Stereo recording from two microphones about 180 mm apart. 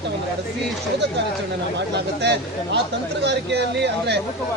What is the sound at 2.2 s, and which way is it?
Speech, 70° right (ahead or behind).